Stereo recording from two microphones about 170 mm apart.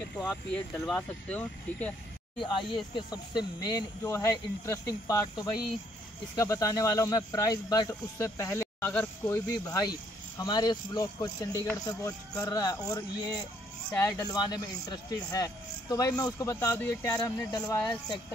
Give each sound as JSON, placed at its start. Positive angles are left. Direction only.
{"t": 0.1, "sound": "speech", "side_deg": 5}
{"t": 2.4, "sound": "speech", "side_deg": 30}